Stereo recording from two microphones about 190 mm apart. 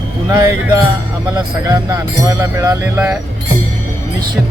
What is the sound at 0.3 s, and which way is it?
Speech, 20° right (ahead or behind).